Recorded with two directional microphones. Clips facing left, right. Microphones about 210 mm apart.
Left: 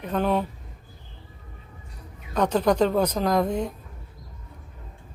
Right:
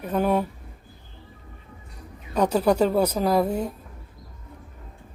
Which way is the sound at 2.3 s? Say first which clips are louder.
Right 1 dB; 10° right (ahead or behind).